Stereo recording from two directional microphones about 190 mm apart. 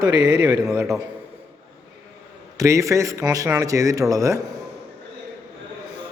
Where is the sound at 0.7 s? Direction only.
5° right (ahead or behind).